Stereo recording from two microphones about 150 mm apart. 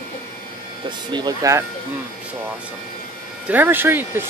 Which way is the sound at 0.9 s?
30° right (ahead or behind).